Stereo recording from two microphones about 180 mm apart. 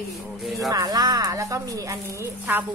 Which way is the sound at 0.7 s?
20° right (ahead or behind).